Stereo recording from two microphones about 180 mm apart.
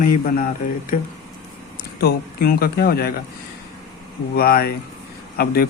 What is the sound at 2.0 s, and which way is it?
A man's voice, 60° left (ahead or behind).